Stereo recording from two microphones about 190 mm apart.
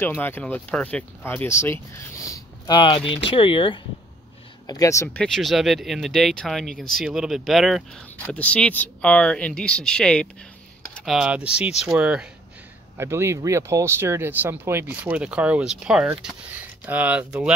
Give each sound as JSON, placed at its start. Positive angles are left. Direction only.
{"t": 0.0, "sound": "speech", "side_deg": 10}